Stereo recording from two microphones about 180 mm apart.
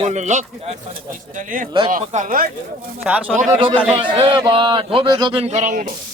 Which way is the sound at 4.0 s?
25° right (ahead or behind).